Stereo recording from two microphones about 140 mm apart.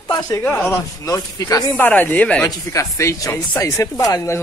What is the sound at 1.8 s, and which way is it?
Speech, 10° left (ahead or behind).